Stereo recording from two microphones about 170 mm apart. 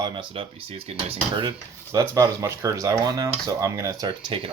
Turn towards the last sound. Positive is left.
turn(degrees=-30)  # may be behind; listen again after turning